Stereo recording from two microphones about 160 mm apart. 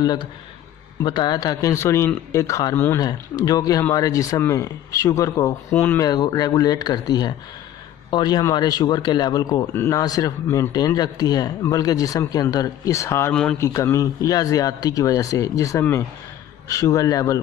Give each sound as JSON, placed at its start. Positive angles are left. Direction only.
{"t": 0.0, "sound": "speech", "side_deg": 25}
{"t": 6.0, "sound": "speech", "side_deg": 25}
{"t": 13.3, "sound": "speech", "side_deg": 5}
{"t": 13.6, "sound": "speech", "side_deg": 20}